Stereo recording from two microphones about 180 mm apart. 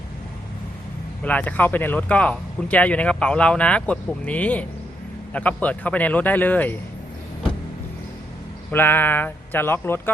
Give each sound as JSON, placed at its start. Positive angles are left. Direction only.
{"t": 1.2, "sound": "speech", "side_deg": 10}
{"t": 8.7, "sound": "speech", "side_deg": 10}